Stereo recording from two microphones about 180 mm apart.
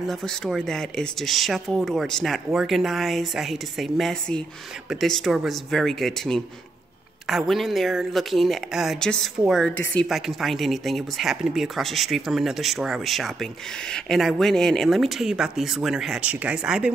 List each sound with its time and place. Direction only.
0.0 s speech: centre (ahead or behind)